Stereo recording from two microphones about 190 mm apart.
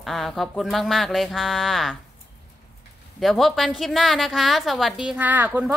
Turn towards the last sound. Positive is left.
turn(degrees=-10)  # may be behind; listen again after turning